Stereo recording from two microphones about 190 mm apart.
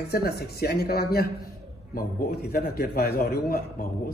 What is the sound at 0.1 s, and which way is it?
A woman's voice, 55° left (ahead or behind).